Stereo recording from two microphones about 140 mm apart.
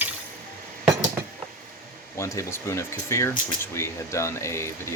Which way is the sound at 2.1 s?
20° left (ahead or behind).